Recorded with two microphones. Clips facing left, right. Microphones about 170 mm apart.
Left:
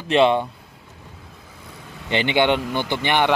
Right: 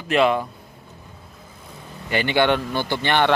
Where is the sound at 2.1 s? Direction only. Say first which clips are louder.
Even; 20° left (ahead or behind).